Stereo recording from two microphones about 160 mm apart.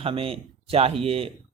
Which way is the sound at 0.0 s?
35° right (ahead or behind).